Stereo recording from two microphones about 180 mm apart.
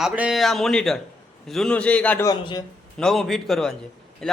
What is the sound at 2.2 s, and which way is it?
Speech, 25° left (ahead or behind).